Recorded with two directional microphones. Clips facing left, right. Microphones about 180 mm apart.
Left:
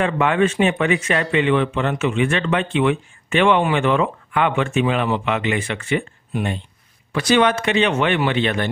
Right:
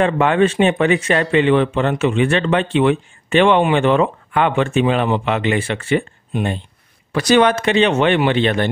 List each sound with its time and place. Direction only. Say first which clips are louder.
0.0 s speech: right 3 dB; 35° right (ahead or behind)